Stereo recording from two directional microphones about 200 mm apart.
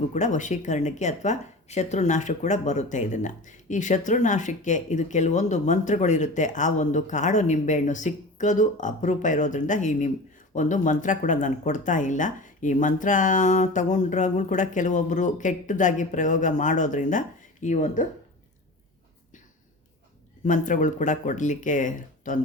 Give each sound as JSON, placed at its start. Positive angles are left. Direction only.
{"t": 0.1, "sound": "speech", "side_deg": 35}
{"t": 20.4, "sound": "speech", "side_deg": 40}